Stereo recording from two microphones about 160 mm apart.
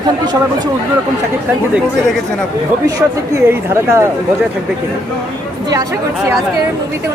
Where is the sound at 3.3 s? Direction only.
15° right (ahead or behind).